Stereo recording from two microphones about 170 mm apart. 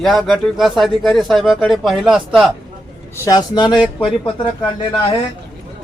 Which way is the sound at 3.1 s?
20° left (ahead or behind).